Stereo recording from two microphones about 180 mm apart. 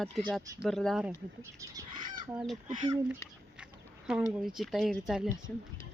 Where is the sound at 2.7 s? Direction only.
20° right (ahead or behind).